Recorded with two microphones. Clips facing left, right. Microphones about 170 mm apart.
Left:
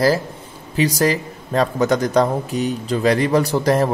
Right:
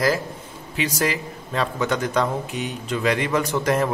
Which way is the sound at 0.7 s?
35° left (ahead or behind).